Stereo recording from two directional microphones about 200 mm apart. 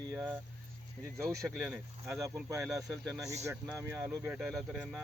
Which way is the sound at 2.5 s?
15° right (ahead or behind).